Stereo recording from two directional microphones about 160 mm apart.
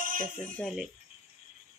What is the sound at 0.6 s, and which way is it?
Speech, centre (ahead or behind).